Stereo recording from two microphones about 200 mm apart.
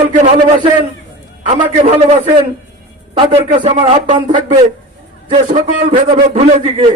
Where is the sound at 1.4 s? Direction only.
30° right (ahead or behind).